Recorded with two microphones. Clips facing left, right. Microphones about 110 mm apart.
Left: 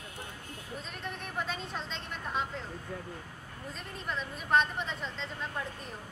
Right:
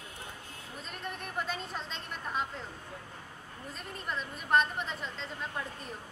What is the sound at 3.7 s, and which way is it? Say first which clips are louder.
A woman's voice: even; centre (ahead or behind).